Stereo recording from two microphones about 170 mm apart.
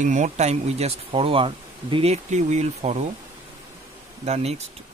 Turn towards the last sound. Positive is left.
turn(degrees=-40)  # may be behind; listen again after turning